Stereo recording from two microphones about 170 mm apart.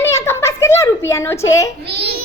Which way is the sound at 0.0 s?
15° left (ahead or behind).